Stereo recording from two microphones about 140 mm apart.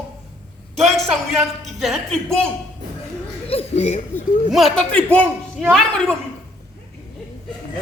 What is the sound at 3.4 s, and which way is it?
Speech, 45° left (ahead or behind).